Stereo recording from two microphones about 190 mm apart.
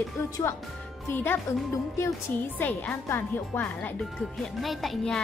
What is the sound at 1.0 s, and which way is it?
Speech, 10° left (ahead or behind).